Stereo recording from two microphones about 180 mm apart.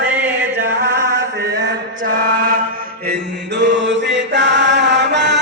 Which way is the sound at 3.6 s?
90° right.